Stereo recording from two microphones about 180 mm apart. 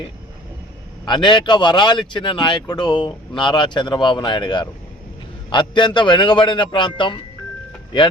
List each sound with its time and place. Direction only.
1.0 s a man's voice: 25° left (ahead or behind)